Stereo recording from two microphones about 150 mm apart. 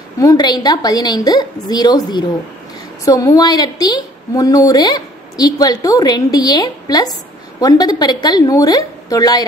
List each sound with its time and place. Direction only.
0.2 s a woman's voice: 25° left (ahead or behind)